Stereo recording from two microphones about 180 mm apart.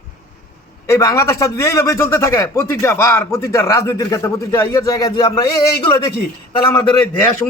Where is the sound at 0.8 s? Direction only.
20° left (ahead or behind).